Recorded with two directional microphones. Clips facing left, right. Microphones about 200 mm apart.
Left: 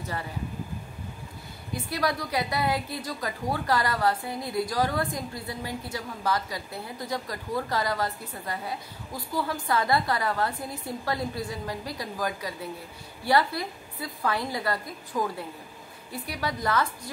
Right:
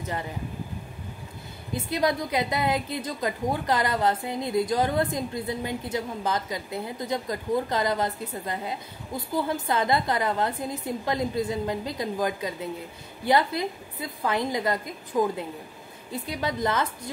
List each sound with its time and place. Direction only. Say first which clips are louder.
1.7 s a woman's voice: right 3 dB; 20° right (ahead or behind)